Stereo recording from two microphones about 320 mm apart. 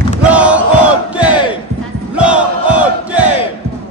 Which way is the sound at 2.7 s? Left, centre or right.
Centre.